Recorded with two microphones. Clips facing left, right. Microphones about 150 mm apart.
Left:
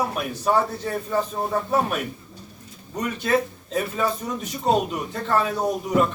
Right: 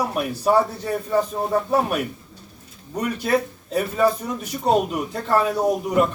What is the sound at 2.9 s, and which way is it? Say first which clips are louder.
A man's voice: right 1 dB; 10° right (ahead or behind).